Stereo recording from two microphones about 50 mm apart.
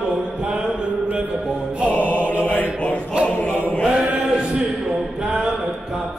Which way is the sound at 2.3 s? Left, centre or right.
Left.